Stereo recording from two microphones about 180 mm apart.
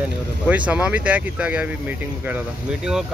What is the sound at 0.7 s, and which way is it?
Speech, 5° right (ahead or behind).